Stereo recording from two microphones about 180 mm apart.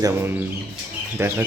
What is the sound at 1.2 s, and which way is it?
Speech, 15° right (ahead or behind).